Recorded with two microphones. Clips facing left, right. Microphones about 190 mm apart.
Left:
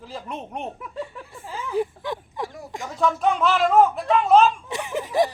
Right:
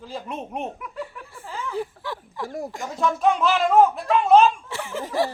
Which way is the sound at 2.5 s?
45° right (ahead or behind).